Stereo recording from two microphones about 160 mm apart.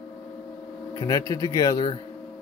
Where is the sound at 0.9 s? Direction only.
25° left (ahead or behind).